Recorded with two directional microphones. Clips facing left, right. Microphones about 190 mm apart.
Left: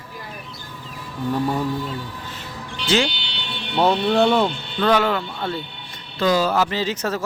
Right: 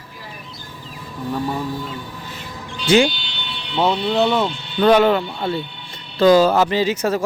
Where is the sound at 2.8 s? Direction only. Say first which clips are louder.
Right 6 dB; 15° right (ahead or behind).